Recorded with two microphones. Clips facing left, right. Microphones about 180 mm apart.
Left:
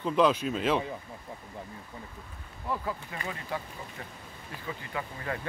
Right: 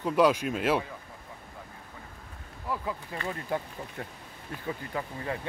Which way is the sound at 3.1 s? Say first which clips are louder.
Right 3 dB; 35° right (ahead or behind).